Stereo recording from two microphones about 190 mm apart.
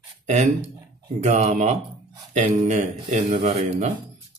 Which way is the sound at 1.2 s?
35° right (ahead or behind).